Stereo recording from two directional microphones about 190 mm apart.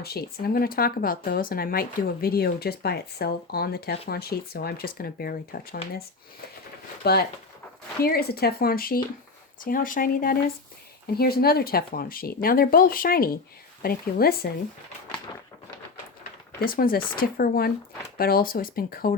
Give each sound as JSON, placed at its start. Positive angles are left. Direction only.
{"t": 0.0, "sound": "speech", "side_deg": 55}
{"t": 7.0, "sound": "speech", "side_deg": 55}
{"t": 16.6, "sound": "speech", "side_deg": 50}